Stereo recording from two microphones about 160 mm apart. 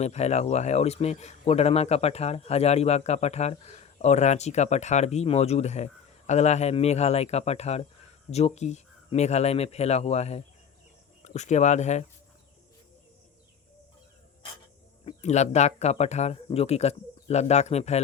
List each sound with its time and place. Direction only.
0.0 s speech: 45° left (ahead or behind)
15.0 s speech: 45° left (ahead or behind)